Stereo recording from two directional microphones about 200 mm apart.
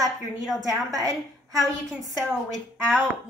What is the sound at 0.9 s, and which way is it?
Speech, 15° right (ahead or behind).